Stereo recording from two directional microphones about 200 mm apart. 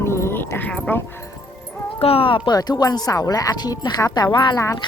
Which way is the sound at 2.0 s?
30° left (ahead or behind).